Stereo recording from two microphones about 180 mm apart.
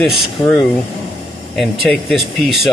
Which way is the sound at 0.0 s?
Centre (ahead or behind).